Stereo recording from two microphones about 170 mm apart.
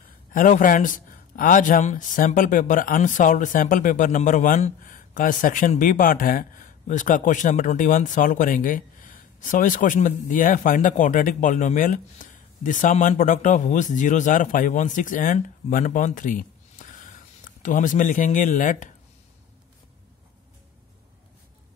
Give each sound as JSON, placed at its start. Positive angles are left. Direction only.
{"t": 0.3, "sound": "speech", "side_deg": 50}